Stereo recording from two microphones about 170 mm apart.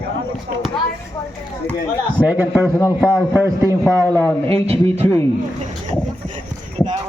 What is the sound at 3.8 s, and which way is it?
Speech, 15° left (ahead or behind).